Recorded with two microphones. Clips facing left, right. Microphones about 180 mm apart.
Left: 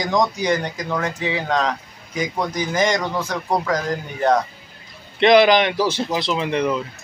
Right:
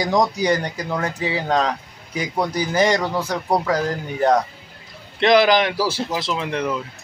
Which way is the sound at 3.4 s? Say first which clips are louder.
Right 2 dB; 10° right (ahead or behind).